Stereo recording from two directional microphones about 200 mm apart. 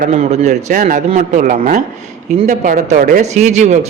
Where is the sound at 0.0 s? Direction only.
35° right (ahead or behind).